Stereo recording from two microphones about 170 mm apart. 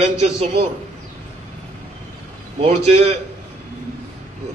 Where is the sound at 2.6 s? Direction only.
40° right (ahead or behind).